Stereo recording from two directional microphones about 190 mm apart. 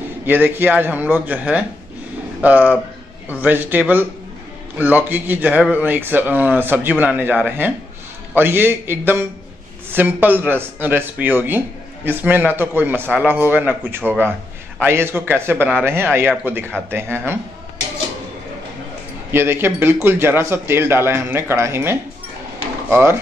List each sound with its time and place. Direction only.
0.2 s a man's voice: 10° right (ahead or behind)
19.3 s a man's voice: 10° right (ahead or behind)